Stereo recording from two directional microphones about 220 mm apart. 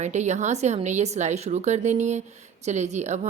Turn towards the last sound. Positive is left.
turn(degrees=-30)  # may be behind; listen again after turning